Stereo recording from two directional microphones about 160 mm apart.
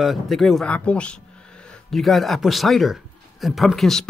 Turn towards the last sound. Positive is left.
turn(degrees=0)  # may be behind; listen again after turning